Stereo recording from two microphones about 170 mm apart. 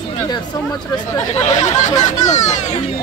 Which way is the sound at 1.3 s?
45° left (ahead or behind).